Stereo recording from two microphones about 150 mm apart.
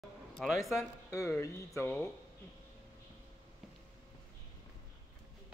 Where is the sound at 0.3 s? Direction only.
Centre (ahead or behind).